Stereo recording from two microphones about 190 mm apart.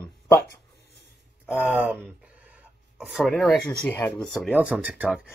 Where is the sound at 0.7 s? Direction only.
60° left (ahead or behind).